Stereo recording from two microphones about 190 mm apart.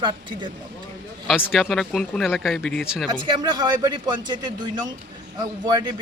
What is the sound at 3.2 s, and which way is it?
Speech, 25° right (ahead or behind).